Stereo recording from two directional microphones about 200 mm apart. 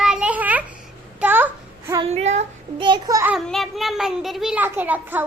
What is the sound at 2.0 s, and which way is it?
Child singing, 35° right (ahead or behind).